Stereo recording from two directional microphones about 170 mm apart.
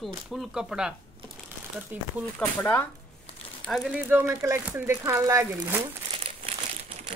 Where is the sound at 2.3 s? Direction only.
5° left (ahead or behind); by 5.9 s 15° right (ahead or behind).